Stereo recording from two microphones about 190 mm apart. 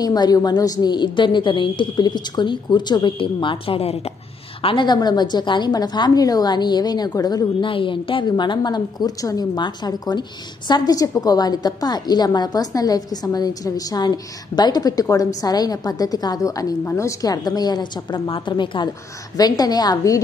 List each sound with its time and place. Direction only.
0.0 s a woman's voice: 20° left (ahead or behind)